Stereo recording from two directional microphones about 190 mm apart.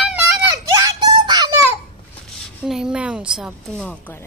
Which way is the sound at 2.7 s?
5° right (ahead or behind).